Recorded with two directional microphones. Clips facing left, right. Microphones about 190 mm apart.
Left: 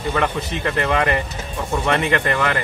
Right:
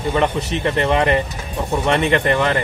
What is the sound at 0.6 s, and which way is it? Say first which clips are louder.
A man's voice: right 3 dB; 25° right (ahead or behind).